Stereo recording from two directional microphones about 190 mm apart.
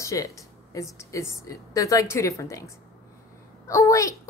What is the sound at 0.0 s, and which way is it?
A woman's voice, 15° left (ahead or behind).